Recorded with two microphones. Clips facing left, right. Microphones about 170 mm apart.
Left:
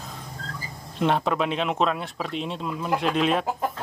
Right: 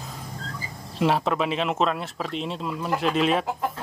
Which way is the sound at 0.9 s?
5° right (ahead or behind).